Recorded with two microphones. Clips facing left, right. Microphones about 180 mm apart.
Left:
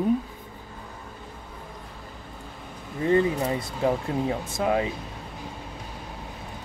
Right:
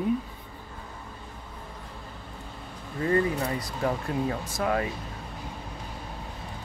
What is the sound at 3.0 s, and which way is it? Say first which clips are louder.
Speech: left 3 dB; 25° left (ahead or behind).